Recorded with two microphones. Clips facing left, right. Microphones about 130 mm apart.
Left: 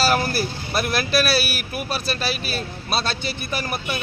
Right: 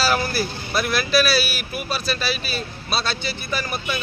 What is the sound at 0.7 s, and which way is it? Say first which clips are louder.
Speech: right 1 dB; 50° left (ahead or behind).